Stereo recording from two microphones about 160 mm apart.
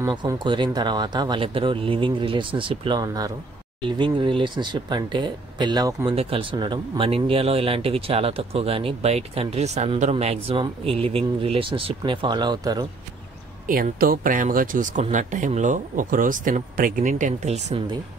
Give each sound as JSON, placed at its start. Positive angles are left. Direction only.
{"t": 0.1, "sound": "speech", "side_deg": -30}
{"t": 3.0, "sound": "speech", "side_deg": -25}
{"t": 13.7, "sound": "speech", "side_deg": -65}